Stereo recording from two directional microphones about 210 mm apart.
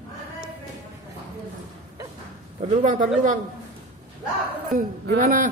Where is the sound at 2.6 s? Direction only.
35° right (ahead or behind).